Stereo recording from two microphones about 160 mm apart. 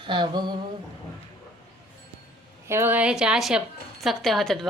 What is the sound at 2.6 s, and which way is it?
Speech, 15° right (ahead or behind).